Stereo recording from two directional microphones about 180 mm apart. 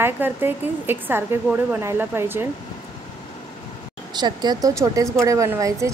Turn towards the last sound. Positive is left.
turn(degrees=-15)  # may be behind; listen again after turning